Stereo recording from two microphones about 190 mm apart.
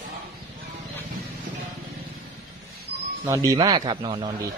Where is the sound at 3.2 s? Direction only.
15° right (ahead or behind).